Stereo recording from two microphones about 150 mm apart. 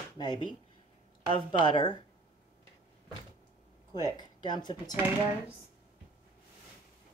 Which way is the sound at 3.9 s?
25° left (ahead or behind).